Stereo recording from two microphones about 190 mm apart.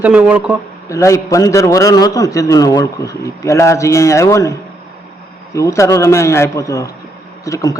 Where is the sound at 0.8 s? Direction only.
15° left (ahead or behind).